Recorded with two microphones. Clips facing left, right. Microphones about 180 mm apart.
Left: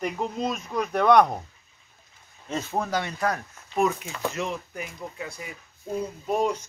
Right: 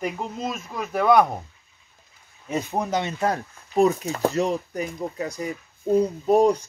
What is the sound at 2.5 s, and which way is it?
Speech, 15° right (ahead or behind).